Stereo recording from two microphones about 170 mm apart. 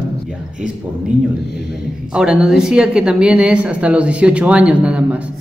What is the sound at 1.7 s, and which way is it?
A man's voice, 5° right (ahead or behind).